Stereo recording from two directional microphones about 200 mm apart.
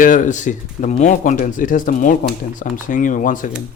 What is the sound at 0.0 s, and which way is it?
Speech, 40° left (ahead or behind).